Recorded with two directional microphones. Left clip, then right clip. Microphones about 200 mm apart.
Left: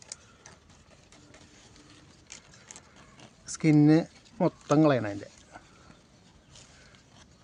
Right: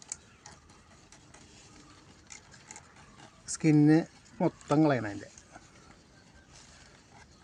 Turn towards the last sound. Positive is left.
turn(degrees=35)  # may be behind; listen again after turning